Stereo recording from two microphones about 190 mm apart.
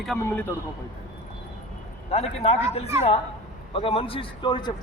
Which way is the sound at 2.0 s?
35° left (ahead or behind).